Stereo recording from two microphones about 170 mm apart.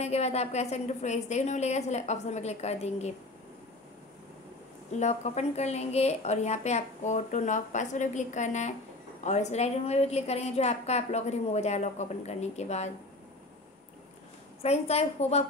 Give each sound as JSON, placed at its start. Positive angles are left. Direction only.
{"t": 0.0, "sound": "a woman's voice", "side_deg": 40}
{"t": 4.9, "sound": "a woman's voice", "side_deg": 40}
{"t": 14.6, "sound": "a woman's voice", "side_deg": 40}